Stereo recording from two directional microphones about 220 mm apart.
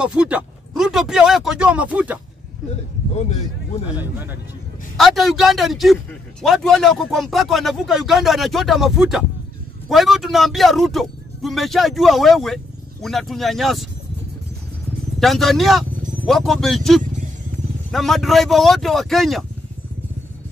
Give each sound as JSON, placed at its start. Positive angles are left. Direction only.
{"t": 0.0, "sound": "speech", "side_deg": -5}
{"t": 3.2, "sound": "speech", "side_deg": 30}
{"t": 4.0, "sound": "speech", "side_deg": -10}
{"t": 15.1, "sound": "speech", "side_deg": 0}